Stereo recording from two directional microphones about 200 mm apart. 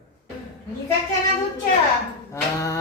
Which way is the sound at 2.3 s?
15° left (ahead or behind).